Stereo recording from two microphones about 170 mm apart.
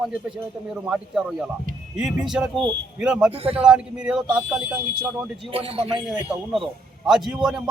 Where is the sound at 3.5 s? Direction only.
5° right (ahead or behind).